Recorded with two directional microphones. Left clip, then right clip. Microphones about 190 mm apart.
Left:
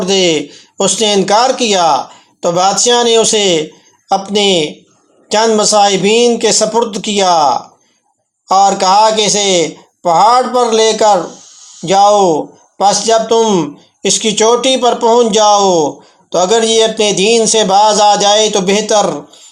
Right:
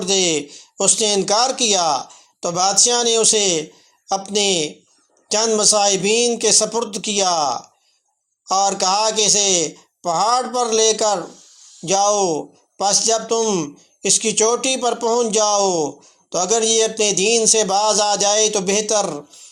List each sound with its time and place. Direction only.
0.0 s speech: 25° right (ahead or behind)